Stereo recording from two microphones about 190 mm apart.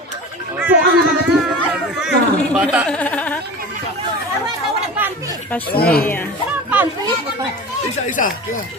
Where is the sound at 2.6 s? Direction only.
10° right (ahead or behind).